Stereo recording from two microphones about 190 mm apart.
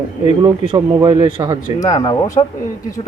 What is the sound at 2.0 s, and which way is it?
Speech, 20° left (ahead or behind).